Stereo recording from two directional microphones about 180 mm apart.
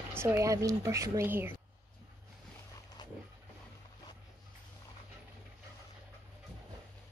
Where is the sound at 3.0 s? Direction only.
25° left (ahead or behind).